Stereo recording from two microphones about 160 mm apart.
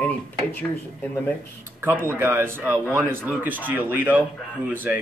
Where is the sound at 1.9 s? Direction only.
15° right (ahead or behind).